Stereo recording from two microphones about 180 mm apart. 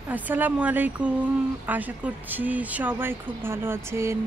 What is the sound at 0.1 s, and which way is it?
Speech, 10° right (ahead or behind).